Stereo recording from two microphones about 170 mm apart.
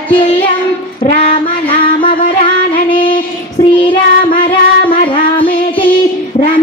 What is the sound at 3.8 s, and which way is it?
Child singing, 30° left (ahead or behind).